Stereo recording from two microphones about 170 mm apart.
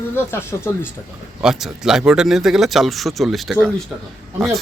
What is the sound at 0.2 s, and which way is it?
Speech, 15° left (ahead or behind).